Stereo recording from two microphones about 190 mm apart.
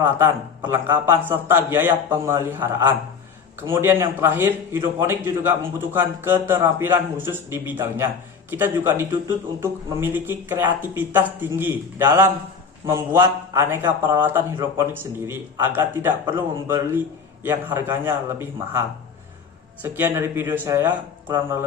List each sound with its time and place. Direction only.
0.0 s a man's voice: 20° right (ahead or behind)